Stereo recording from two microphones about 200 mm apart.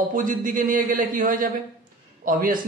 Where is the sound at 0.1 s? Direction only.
40° right (ahead or behind).